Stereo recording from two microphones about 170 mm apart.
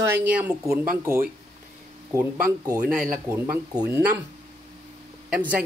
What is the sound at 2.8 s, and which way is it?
Speech, 5° right (ahead or behind).